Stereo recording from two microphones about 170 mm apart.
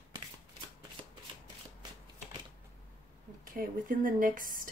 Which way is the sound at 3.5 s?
55° right (ahead or behind).